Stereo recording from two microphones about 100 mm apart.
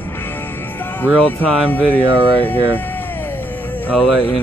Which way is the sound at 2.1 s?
60° right (ahead or behind).